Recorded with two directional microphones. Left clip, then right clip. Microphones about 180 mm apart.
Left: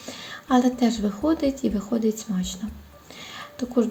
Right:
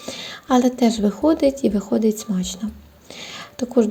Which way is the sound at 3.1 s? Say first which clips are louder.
Right 4 dB; 35° right (ahead or behind).